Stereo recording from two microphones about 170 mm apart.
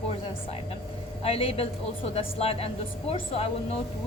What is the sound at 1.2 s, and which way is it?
A woman's voice, 35° left (ahead or behind).